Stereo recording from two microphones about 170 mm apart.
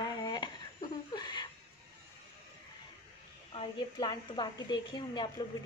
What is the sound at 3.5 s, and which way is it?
A woman's voice, 30° left (ahead or behind).